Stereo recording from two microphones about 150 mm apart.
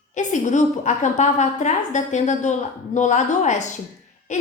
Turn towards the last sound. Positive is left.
turn(degrees=55)  # may be behind; listen again after turning